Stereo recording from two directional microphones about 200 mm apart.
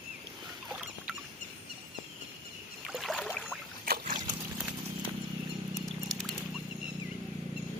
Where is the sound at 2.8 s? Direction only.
Centre (ahead or behind).